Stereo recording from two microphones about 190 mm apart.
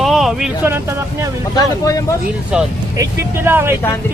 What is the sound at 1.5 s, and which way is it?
Speech, 15° left (ahead or behind).